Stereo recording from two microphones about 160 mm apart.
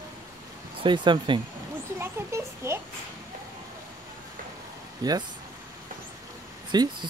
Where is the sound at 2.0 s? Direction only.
15° right (ahead or behind).